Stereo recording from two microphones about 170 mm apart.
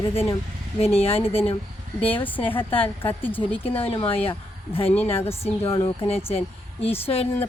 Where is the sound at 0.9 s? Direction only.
35° left (ahead or behind).